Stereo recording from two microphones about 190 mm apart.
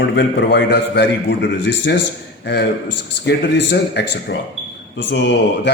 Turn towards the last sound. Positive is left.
turn(degrees=70)  # may be behind; listen again after turning